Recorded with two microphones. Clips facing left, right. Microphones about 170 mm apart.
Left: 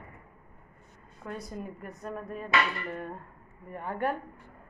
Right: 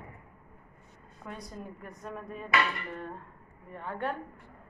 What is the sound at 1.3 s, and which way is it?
A woman's voice, 5° left (ahead or behind).